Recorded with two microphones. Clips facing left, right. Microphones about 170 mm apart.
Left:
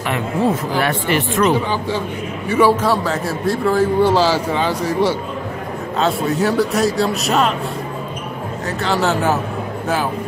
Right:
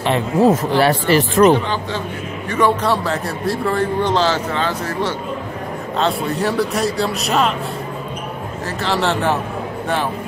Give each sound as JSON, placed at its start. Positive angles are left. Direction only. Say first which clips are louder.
{"t": 0.0, "sound": "speech", "louder": "right 4 dB", "side_deg": -30}
{"t": 2.4, "sound": "a man's voice", "louder": "left 3 dB", "side_deg": 5}
{"t": 5.9, "sound": "speech", "louder": "left 2 dB", "side_deg": 0}
{"t": 8.6, "sound": "speech", "louder": "left 1 dB", "side_deg": 0}